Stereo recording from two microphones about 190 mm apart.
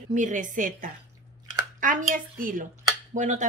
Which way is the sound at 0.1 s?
40° right (ahead or behind).